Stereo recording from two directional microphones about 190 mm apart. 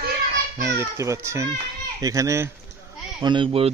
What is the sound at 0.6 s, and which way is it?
Speech, 15° right (ahead or behind).